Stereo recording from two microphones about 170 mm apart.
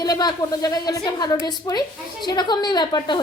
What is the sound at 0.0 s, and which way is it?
A woman's voice, 25° left (ahead or behind).